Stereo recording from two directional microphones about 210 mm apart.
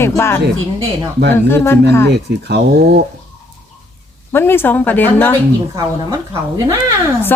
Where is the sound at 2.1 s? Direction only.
50° right (ahead or behind).